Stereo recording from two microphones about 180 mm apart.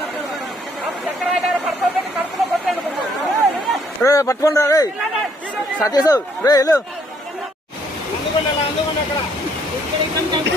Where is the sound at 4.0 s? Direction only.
20° left (ahead or behind).